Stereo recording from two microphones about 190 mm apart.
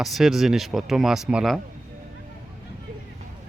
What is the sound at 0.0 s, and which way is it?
Speech, centre (ahead or behind).